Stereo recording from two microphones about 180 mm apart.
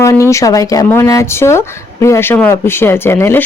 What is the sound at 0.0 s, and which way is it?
Speech, 15° left (ahead or behind).